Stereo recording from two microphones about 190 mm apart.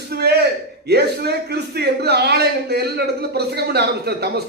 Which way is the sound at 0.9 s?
60° right (ahead or behind).